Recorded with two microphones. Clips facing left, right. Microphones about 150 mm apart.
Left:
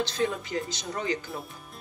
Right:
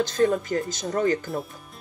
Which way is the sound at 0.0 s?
45° right (ahead or behind).